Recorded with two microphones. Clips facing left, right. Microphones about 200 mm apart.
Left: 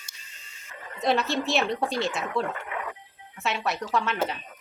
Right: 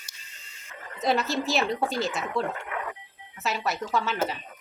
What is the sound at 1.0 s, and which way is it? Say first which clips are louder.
Speech: left 1 dB; centre (ahead or behind).